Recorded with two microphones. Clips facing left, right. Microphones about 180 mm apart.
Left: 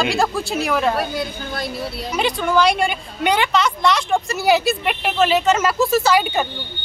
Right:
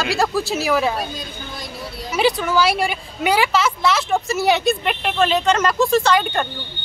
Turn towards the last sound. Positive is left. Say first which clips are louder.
# left 1 dB
turn(degrees=5)  # may be behind; listen again after turning